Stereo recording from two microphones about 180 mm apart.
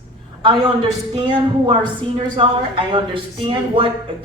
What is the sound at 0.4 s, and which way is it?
Speech, 30° right (ahead or behind).